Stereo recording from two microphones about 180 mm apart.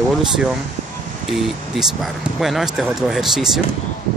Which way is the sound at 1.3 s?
Centre (ahead or behind).